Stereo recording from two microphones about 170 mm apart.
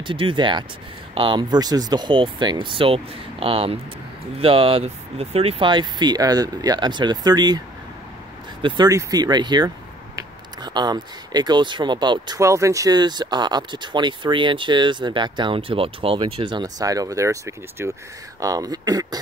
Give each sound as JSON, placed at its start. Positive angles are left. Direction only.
{"t": 0.0, "sound": "speech", "side_deg": -30}
{"t": 8.6, "sound": "speech", "side_deg": -25}